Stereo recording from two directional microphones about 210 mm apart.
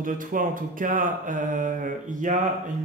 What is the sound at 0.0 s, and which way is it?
Speech, 40° right (ahead or behind).